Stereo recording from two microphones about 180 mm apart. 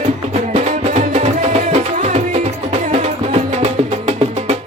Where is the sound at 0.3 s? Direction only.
40° right (ahead or behind).